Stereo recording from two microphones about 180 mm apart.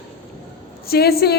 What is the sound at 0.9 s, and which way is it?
Speech, 60° left (ahead or behind).